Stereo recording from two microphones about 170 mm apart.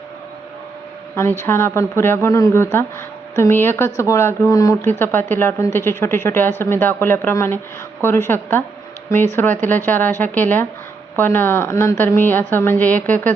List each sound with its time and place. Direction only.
1.1 s speech: 15° left (ahead or behind)